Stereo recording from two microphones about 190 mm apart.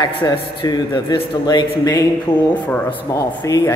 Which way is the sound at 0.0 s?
25° left (ahead or behind).